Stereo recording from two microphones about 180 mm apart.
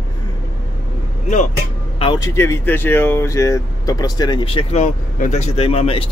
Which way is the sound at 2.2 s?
15° left (ahead or behind).